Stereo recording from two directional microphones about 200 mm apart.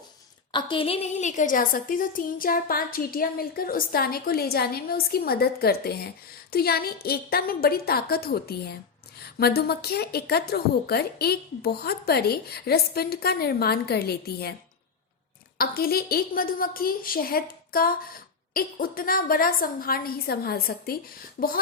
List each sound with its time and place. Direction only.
0.5 s a woman's voice: 25° left (ahead or behind); by 14.5 s 50° left (ahead or behind)
15.5 s a woman's voice: 50° left (ahead or behind)